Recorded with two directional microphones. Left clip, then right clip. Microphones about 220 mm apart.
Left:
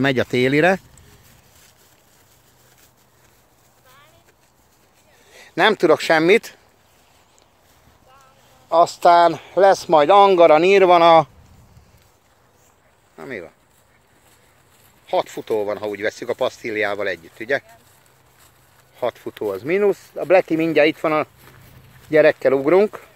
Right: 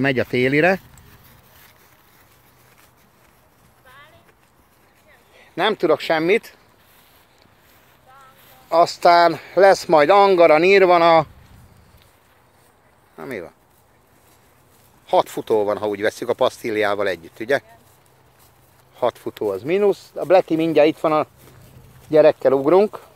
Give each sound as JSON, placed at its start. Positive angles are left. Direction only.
{"t": 0.0, "sound": "speech", "side_deg": 15}
{"t": 5.3, "sound": "speech", "side_deg": 30}
{"t": 8.6, "sound": "a sound", "side_deg": 0}
{"t": 9.0, "sound": "speech", "side_deg": 0}
{"t": 10.3, "sound": "speech", "side_deg": 10}
{"t": 13.1, "sound": "speech", "side_deg": -10}
{"t": 15.0, "sound": "speech", "side_deg": -20}
{"t": 18.9, "sound": "speech", "side_deg": -15}